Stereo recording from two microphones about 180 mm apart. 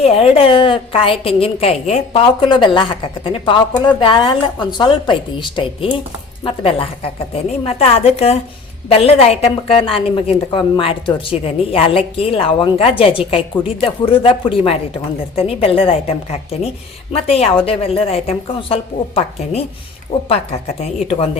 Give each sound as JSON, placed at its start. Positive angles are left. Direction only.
{"t": 0.0, "sound": "a woman's voice", "side_deg": 30}